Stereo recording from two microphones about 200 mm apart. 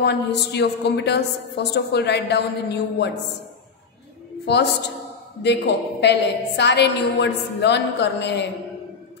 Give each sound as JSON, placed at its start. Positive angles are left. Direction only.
{"t": 0.0, "sound": "a woman's voice", "side_deg": 55}
{"t": 5.4, "sound": "a woman's voice", "side_deg": 60}